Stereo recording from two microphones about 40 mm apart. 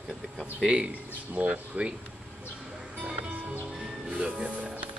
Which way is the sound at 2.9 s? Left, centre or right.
Right.